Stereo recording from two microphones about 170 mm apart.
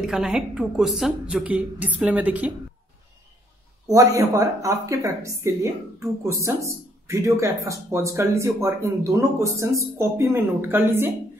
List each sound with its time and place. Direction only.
0.0 s speech: 5° right (ahead or behind)
3.8 s speech: 20° right (ahead or behind)